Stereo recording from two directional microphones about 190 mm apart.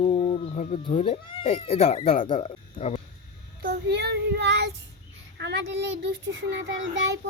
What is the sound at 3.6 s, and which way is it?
Child singing, 55° right (ahead or behind).